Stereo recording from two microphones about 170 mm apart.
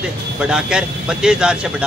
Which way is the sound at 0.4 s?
5° right (ahead or behind).